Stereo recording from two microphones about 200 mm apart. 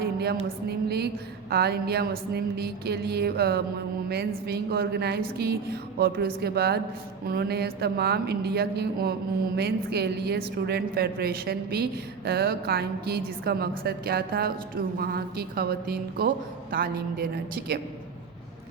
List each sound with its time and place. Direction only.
0.0 s a woman's voice: 50° right (ahead or behind)